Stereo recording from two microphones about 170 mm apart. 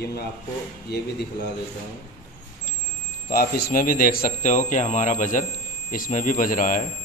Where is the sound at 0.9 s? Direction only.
70° left (ahead or behind).